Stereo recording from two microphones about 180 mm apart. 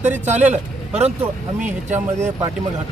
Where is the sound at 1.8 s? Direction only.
40° right (ahead or behind).